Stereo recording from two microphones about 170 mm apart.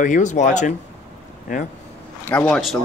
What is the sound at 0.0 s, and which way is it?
Speech, 45° left (ahead or behind).